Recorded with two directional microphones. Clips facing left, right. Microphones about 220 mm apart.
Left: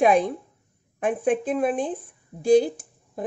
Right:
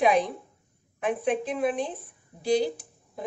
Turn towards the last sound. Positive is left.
turn(degrees=50)  # may be behind; listen again after turning